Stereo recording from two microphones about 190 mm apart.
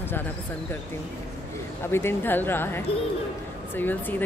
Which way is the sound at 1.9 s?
10° left (ahead or behind).